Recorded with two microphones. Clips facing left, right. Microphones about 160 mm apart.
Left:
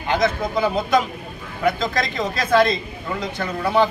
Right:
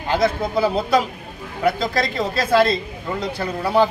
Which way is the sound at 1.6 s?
10° right (ahead or behind).